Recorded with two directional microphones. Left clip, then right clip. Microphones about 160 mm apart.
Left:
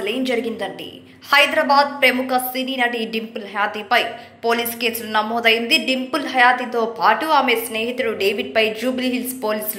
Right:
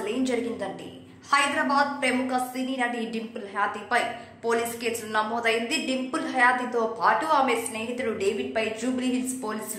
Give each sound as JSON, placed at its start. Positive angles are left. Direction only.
{"t": 0.0, "sound": "a woman's voice", "side_deg": 15}